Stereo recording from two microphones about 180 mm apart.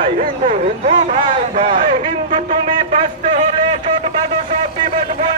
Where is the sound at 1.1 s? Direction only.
35° right (ahead or behind).